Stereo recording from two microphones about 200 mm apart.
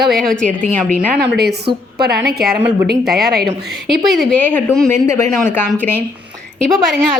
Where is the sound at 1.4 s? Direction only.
55° right (ahead or behind).